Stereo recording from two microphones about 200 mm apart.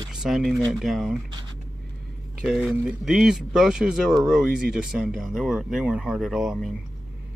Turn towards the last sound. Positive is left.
turn(degrees=0)  # may be behind; listen again after turning